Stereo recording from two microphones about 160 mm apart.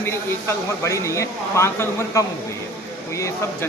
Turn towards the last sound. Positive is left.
turn(degrees=20)  # may be behind; listen again after turning